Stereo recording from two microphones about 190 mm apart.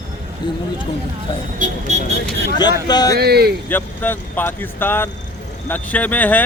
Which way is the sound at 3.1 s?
55° right (ahead or behind).